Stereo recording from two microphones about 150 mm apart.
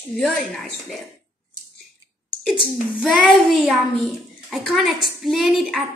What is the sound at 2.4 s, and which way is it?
A child's voice, 5° right (ahead or behind).